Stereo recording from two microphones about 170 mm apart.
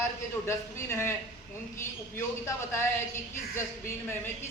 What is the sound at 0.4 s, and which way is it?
A man's voice, 15° left (ahead or behind).